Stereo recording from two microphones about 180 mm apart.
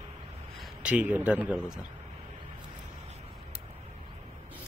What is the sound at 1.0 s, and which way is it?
Speech, 10° right (ahead or behind).